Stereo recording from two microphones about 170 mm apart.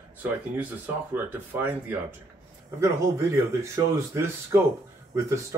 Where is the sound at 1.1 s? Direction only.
10° right (ahead or behind).